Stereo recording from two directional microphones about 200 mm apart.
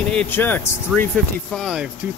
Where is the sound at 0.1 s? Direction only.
5° left (ahead or behind).